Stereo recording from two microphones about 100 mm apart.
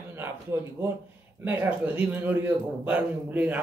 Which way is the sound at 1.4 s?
15° right (ahead or behind).